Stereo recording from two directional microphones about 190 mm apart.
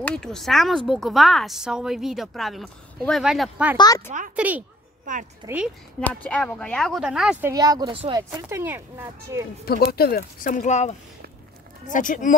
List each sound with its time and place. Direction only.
0.0 s speech: 5° left (ahead or behind)
3.7 s speech: 20° left (ahead or behind)
4.4 s speech: 10° right (ahead or behind)
5.4 s speech: 20° right (ahead or behind)
6.2 s speech: 5° left (ahead or behind); by 9.4 s 10° right (ahead or behind)
9.7 s speech: 55° left (ahead or behind)